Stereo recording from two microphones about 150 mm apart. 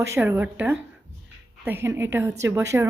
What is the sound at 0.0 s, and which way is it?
A woman's voice, 15° right (ahead or behind).